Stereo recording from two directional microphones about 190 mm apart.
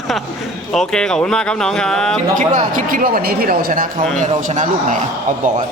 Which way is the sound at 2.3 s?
40° right (ahead or behind).